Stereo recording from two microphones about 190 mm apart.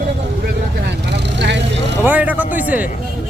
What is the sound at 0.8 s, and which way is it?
Vehicle, 60° right (ahead or behind).